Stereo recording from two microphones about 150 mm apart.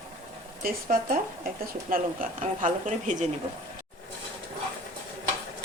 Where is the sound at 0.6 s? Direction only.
65° right (ahead or behind).